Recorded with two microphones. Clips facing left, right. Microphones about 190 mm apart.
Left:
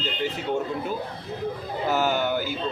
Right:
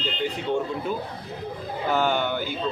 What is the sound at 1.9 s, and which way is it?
Speech, 5° left (ahead or behind).